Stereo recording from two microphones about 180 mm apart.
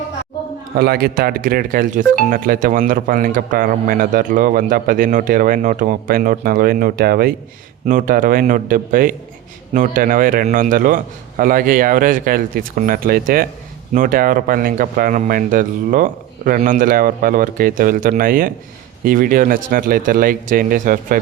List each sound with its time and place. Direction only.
0.8 s speech: 60° right (ahead or behind)